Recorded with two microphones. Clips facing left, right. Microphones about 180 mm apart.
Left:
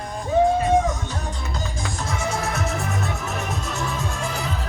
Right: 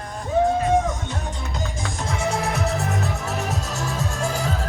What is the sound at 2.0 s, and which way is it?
Music, 30° right (ahead or behind).